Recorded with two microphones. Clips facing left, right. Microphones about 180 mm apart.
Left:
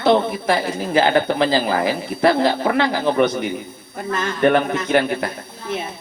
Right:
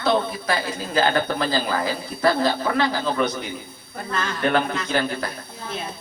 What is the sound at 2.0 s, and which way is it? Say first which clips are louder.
A woman's voice: left 3 dB; 20° left (ahead or behind).